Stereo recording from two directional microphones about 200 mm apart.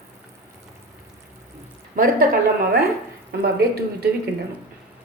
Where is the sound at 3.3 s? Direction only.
55° right (ahead or behind).